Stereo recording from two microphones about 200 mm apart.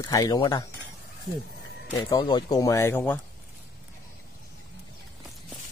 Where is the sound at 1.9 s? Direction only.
20° left (ahead or behind).